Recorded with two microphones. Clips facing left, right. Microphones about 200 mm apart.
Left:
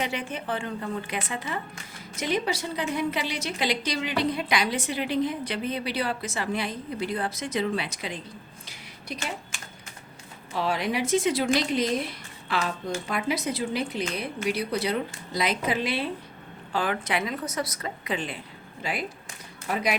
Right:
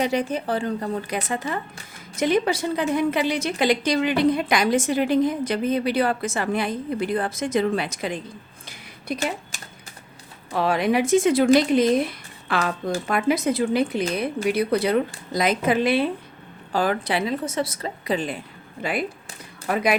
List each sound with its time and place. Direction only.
0.0 s speech: 40° right (ahead or behind)
8.6 s a sound: 45° right (ahead or behind)
10.5 s speech: 55° right (ahead or behind)
16.7 s a woman's voice: 40° right (ahead or behind)
18.8 s speech: 55° right (ahead or behind)